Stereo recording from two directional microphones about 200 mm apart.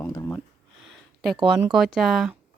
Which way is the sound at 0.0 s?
15° left (ahead or behind).